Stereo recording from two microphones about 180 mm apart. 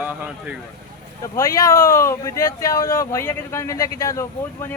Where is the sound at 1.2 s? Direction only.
15° left (ahead or behind).